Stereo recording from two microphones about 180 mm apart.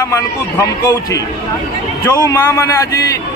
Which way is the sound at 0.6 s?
15° left (ahead or behind).